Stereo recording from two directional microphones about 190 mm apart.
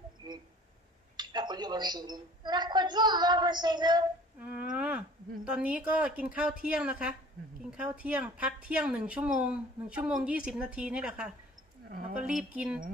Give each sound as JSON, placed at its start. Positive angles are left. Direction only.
{"t": 1.1, "sound": "a woman's voice", "side_deg": -20}
{"t": 4.4, "sound": "a sound", "side_deg": -5}
{"t": 5.4, "sound": "a woman's voice", "side_deg": -5}